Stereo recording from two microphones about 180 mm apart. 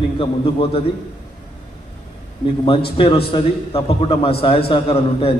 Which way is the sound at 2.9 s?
30° left (ahead or behind).